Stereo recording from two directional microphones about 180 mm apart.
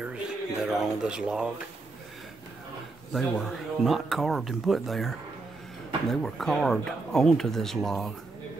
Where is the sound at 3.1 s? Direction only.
Centre (ahead or behind).